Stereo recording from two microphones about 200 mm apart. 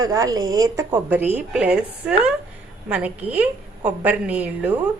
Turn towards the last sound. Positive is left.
turn(degrees=-5)  # may be behind; listen again after turning